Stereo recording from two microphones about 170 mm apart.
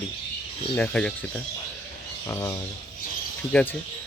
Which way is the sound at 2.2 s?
15° left (ahead or behind).